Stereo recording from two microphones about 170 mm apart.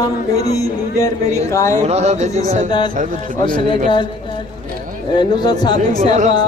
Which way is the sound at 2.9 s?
55° right (ahead or behind).